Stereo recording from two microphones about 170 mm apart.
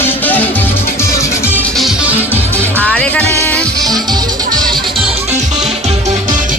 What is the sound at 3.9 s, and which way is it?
Music, 25° right (ahead or behind).